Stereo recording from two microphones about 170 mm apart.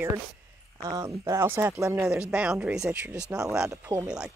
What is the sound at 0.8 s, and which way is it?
Speech, 15° right (ahead or behind).